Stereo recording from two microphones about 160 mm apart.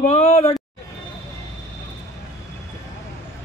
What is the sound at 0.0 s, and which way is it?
Speech, 45° left (ahead or behind).